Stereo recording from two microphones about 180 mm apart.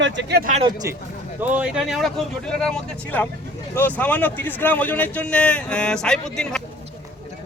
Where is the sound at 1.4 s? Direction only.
10° right (ahead or behind).